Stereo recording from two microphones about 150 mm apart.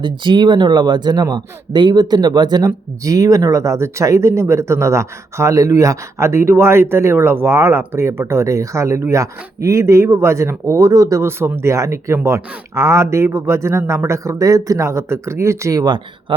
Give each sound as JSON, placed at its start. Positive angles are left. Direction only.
{"t": 0.0, "sound": "speech", "side_deg": -30}